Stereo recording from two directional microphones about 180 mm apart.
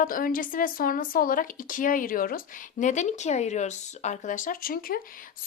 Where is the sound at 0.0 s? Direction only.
50° left (ahead or behind).